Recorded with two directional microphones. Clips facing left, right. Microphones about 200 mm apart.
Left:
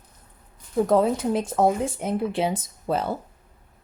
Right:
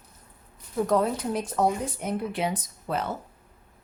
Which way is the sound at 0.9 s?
25° left (ahead or behind).